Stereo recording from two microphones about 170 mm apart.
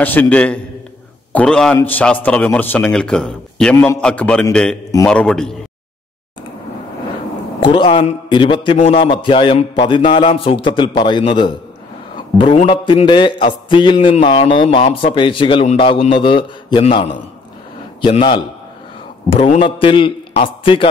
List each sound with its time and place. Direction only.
0.0 s a man's voice: 10° left (ahead or behind)
7.6 s speech: 25° left (ahead or behind)
12.6 s a man's voice: 30° left (ahead or behind)